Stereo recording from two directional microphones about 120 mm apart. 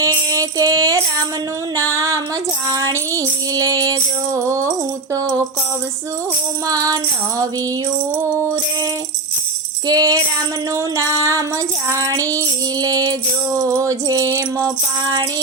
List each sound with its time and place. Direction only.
0.0 s music: 25° right (ahead or behind)
4.4 s mantra: 25° right (ahead or behind)
6.7 s mantra: 30° right (ahead or behind)
9.8 s music: 35° right (ahead or behind)
10.9 s mantra: 25° right (ahead or behind)